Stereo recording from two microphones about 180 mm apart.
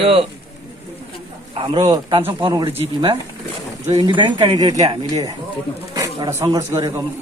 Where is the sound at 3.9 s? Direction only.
20° right (ahead or behind).